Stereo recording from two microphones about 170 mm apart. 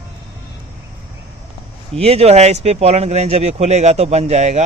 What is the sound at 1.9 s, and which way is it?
Speech, 35° right (ahead or behind).